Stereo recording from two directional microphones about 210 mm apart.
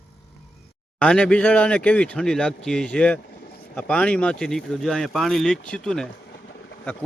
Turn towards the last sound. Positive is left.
turn(degrees=55)  # may be behind; listen again after turning